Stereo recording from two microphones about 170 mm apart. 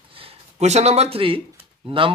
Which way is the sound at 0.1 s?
35° right (ahead or behind).